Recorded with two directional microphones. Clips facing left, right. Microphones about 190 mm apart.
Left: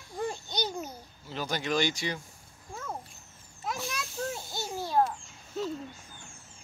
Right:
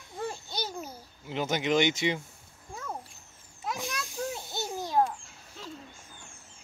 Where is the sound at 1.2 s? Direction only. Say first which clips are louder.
Right 4 dB; 20° right (ahead or behind).